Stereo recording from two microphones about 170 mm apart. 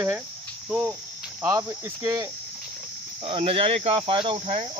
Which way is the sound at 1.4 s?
20° right (ahead or behind).